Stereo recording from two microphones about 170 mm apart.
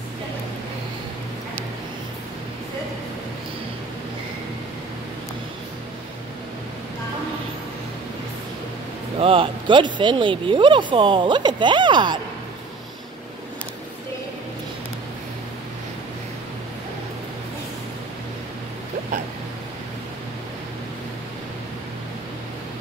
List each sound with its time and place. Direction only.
9.2 s speech: 30° right (ahead or behind)